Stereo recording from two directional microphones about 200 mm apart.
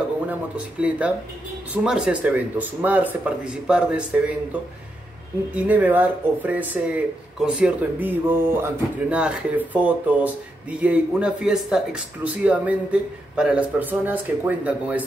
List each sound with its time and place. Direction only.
0.3 s speech: 5° right (ahead or behind)
5.5 s speech: 5° right (ahead or behind)